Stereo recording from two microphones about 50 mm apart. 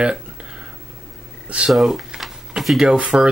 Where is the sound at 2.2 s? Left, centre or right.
Centre.